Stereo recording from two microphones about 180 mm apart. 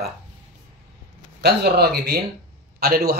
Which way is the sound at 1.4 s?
65° right (ahead or behind).